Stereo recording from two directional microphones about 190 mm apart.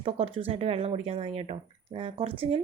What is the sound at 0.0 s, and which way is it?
Speech, 30° right (ahead or behind).